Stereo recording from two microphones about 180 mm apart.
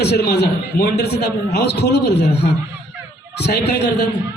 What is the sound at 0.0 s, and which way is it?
A man's voice, 65° left (ahead or behind).